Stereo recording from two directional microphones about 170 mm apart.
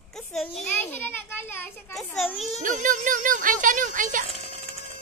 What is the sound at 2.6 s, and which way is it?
A child's voice, 50° right (ahead or behind).